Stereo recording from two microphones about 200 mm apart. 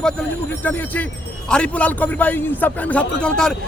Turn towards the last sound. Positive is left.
turn(degrees=5)  # may be behind; listen again after turning